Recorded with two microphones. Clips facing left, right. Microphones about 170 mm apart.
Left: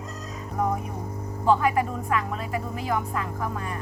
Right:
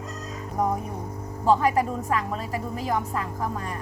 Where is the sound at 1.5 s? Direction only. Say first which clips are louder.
Right 1 dB; 35° right (ahead or behind).